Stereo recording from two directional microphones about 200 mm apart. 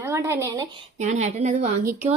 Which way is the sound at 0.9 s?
35° right (ahead or behind).